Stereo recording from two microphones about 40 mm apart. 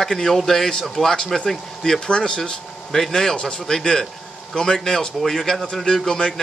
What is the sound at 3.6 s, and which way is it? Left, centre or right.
Speech, centre.